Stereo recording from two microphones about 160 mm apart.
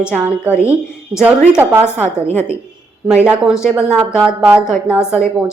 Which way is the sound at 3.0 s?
5° right (ahead or behind).